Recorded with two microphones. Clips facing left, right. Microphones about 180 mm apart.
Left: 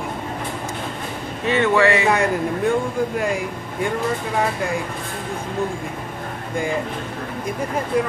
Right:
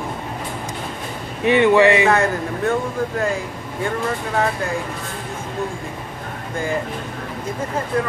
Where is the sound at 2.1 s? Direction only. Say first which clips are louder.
Right 1 dB; 15° left (ahead or behind).